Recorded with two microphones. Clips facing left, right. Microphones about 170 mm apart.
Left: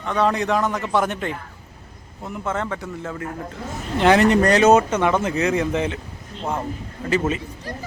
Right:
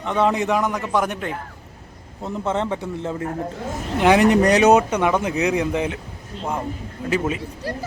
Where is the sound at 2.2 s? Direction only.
25° right (ahead or behind).